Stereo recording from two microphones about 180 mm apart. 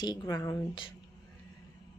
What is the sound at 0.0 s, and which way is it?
Speech, 25° left (ahead or behind).